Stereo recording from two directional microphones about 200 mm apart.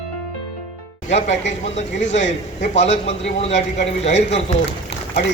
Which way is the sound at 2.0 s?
35° left (ahead or behind).